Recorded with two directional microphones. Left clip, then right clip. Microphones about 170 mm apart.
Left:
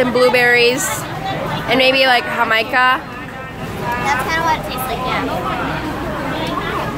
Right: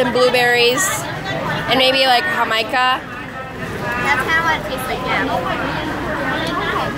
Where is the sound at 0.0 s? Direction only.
25° left (ahead or behind).